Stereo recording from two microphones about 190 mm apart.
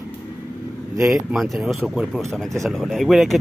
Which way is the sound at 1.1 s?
Centre (ahead or behind).